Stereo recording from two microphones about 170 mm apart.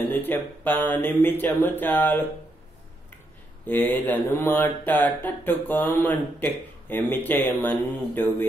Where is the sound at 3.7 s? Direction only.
10° left (ahead or behind).